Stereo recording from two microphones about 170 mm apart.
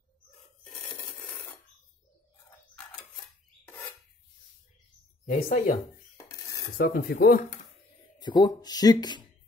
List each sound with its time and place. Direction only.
3.6 s a sound: 15° left (ahead or behind)
5.2 s speech: 50° left (ahead or behind)
6.8 s speech: 60° left (ahead or behind)
8.2 s speech: 25° left (ahead or behind)